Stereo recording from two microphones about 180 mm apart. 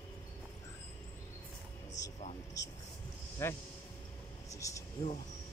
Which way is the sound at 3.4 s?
15° left (ahead or behind).